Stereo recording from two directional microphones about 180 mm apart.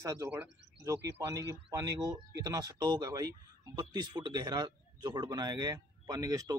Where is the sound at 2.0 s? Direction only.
20° right (ahead or behind).